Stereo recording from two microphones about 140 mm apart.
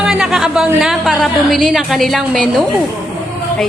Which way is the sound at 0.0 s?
5° right (ahead or behind).